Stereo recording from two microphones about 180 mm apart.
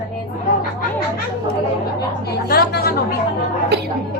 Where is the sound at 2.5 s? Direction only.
55° left (ahead or behind).